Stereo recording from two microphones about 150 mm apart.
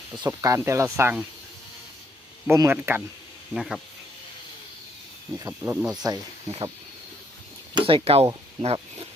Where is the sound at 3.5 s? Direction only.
5° right (ahead or behind).